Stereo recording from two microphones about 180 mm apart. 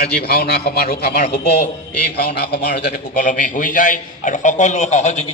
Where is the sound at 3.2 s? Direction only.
45° left (ahead or behind).